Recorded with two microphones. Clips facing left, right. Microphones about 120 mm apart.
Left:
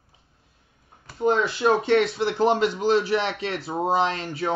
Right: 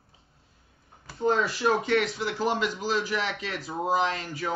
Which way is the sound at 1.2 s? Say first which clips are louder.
Left 3 dB; 25° left (ahead or behind).